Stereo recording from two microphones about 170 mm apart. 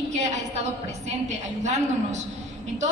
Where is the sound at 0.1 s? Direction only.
40° right (ahead or behind).